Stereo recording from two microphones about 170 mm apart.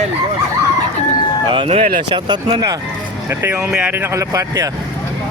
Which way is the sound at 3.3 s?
15° right (ahead or behind).